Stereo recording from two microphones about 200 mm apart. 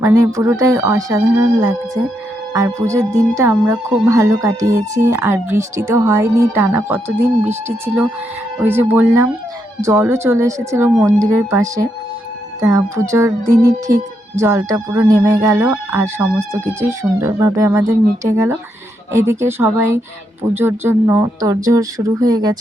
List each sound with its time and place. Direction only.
0.0 s speech: 15° right (ahead or behind)
8.5 s speech: 10° right (ahead or behind)